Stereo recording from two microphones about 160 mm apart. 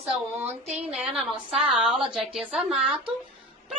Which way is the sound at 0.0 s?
10° right (ahead or behind).